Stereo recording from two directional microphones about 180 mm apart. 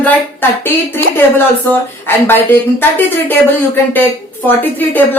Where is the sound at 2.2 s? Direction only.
10° left (ahead or behind).